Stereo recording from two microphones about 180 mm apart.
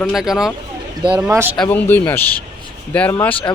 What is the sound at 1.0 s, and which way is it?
Speech, 20° right (ahead or behind).